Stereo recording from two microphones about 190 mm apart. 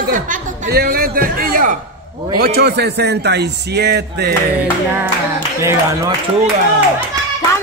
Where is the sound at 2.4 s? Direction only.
60° right (ahead or behind).